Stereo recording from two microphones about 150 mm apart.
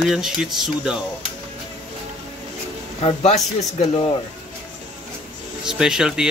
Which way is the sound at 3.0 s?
45° left (ahead or behind).